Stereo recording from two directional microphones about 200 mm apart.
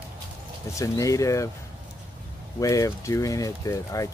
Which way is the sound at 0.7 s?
15° left (ahead or behind).